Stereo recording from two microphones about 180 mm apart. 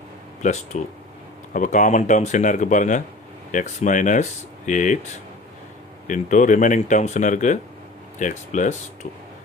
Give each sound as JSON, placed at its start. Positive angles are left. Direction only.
{"t": 0.4, "sound": "speech", "side_deg": 40}
{"t": 6.0, "sound": "speech", "side_deg": 45}